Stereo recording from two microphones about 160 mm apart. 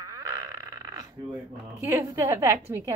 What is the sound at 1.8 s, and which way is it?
A woman's voice, 15° right (ahead or behind).